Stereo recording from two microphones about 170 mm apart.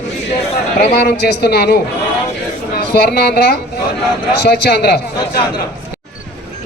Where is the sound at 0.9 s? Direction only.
70° left (ahead or behind).